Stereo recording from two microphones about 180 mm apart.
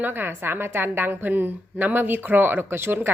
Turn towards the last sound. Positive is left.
turn(degrees=-10)  # may be behind; listen again after turning